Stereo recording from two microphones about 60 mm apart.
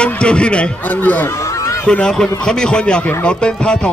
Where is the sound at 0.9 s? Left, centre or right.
Left.